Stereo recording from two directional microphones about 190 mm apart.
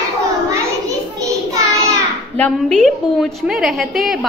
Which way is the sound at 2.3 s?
5° left (ahead or behind).